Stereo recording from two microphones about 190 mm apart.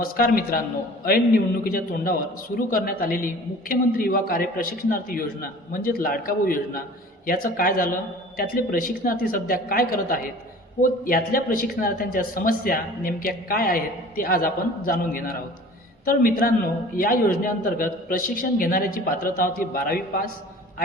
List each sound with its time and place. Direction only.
0.0 s speech: 50° left (ahead or behind)
1.6 s speech: 50° left (ahead or behind)